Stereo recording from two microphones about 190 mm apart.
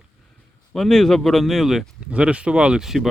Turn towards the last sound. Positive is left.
turn(degrees=0)  # may be behind; listen again after turning